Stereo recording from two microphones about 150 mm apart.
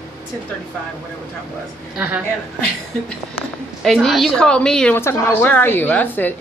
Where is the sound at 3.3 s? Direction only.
Centre (ahead or behind).